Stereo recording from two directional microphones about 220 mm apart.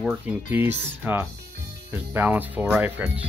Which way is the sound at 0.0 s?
10° right (ahead or behind).